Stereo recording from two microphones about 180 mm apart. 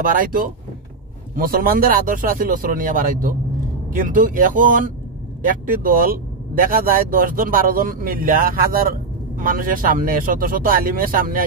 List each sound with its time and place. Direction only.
0.0 s speech: 50° right (ahead or behind)